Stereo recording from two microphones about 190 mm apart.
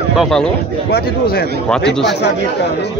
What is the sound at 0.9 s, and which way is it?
Speech, 55° left (ahead or behind).